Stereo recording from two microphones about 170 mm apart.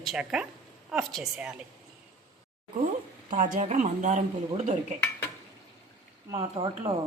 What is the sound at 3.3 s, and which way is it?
Speech, 50° right (ahead or behind).